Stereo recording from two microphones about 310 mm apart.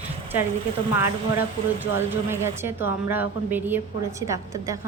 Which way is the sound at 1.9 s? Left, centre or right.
Centre.